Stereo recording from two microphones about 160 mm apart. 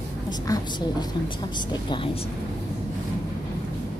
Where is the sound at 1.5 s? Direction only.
30° left (ahead or behind).